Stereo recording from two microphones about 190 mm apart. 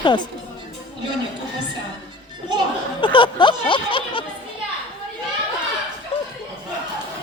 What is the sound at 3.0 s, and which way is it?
Speech, 25° left (ahead or behind).